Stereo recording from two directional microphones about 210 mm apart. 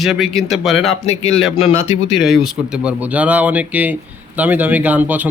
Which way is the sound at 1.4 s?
Centre (ahead or behind).